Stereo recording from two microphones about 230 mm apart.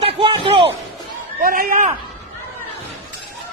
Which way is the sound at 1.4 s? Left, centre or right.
Right.